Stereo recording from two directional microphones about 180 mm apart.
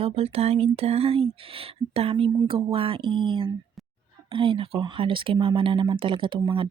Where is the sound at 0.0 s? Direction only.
35° right (ahead or behind).